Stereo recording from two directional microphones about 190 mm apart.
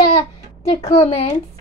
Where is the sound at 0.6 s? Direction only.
35° left (ahead or behind).